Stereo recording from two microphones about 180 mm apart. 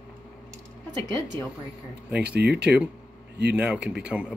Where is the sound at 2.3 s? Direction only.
65° right (ahead or behind).